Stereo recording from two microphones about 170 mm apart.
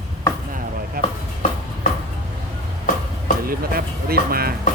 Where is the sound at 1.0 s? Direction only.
60° right (ahead or behind).